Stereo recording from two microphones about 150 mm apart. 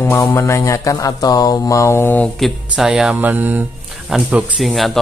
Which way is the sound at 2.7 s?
5° right (ahead or behind).